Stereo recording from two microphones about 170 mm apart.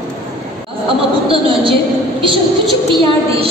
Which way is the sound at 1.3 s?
30° right (ahead or behind).